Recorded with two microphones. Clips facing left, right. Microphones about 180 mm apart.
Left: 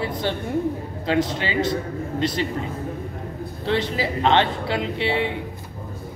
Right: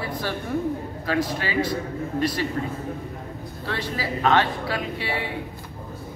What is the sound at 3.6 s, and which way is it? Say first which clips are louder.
Speech: left 6 dB; 25° left (ahead or behind).